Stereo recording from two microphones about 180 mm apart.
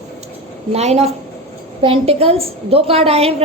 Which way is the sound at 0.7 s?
35° right (ahead or behind).